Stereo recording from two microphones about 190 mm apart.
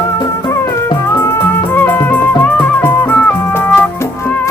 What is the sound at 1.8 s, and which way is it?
Music, 10° left (ahead or behind).